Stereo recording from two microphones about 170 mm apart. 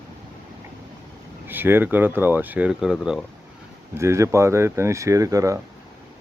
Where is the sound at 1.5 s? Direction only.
10° right (ahead or behind).